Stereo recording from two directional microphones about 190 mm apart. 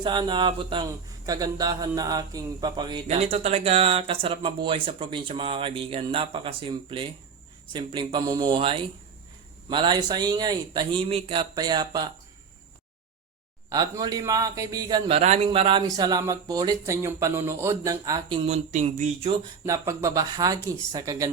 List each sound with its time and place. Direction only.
0.0 s speech: 25° right (ahead or behind)
13.7 s speech: 20° right (ahead or behind)
15.1 s speech: 35° right (ahead or behind); by 18.3 s 20° right (ahead or behind)
18.4 s speech: 35° right (ahead or behind)
19.6 s speech: 15° right (ahead or behind)